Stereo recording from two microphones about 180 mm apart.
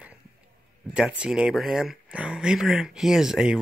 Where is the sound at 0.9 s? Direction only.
5° right (ahead or behind).